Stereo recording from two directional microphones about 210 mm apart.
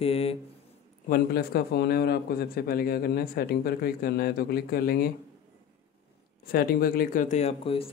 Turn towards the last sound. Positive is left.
turn(degrees=30)  # may be behind; listen again after turning